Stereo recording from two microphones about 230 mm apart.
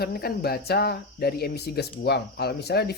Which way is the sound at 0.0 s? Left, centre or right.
Left.